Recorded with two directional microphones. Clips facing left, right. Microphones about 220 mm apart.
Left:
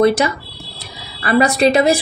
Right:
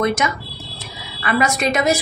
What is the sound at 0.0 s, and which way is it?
A woman's voice, 35° left (ahead or behind).